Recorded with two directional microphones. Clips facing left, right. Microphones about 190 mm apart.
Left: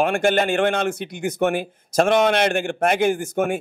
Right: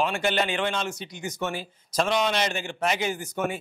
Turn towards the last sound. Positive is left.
turn(degrees=50)  # may be behind; listen again after turning